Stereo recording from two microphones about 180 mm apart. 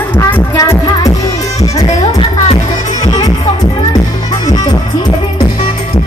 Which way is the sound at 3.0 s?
20° left (ahead or behind).